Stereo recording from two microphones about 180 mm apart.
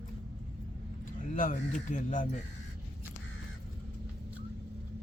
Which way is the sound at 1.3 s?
45° left (ahead or behind).